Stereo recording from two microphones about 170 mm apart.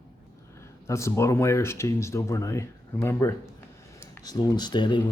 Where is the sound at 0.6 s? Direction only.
15° left (ahead or behind).